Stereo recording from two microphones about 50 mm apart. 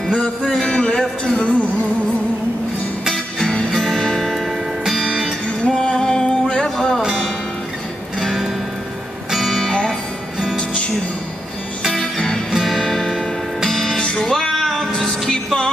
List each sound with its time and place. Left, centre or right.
0.1 s a man's voice: centre
3.1 s music: centre
4.8 s music: centre
5.7 s music: centre
7.0 s music: centre
8.2 s music: centre
11.8 s music: centre